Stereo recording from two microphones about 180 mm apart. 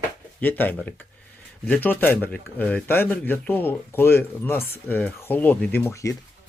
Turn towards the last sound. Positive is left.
turn(degrees=15)  # may be behind; listen again after turning